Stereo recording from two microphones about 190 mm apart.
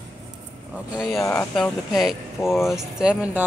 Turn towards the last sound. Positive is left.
turn(degrees=-5)  # may be behind; listen again after turning